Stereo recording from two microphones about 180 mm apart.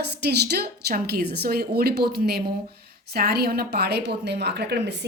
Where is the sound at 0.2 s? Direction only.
65° right (ahead or behind).